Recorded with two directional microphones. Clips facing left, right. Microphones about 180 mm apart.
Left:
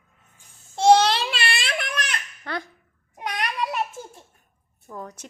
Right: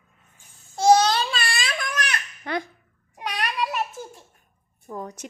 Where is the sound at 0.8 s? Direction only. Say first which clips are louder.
Left 1 dB; 30° left (ahead or behind).